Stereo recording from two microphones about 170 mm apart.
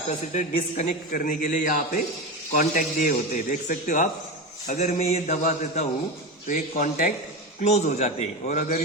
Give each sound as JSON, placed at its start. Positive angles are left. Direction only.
{"t": 0.3, "sound": "a man's voice", "side_deg": 45}
{"t": 7.6, "sound": "a man's voice", "side_deg": 40}